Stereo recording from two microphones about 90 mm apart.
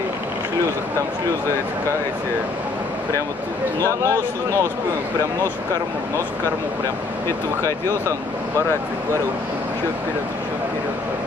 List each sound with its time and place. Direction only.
4.0 s speech: 35° right (ahead or behind)